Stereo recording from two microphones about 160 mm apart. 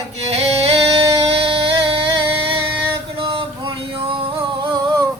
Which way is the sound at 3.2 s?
35° right (ahead or behind).